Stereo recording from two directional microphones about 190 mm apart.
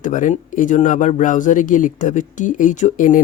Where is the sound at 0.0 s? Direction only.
45° left (ahead or behind).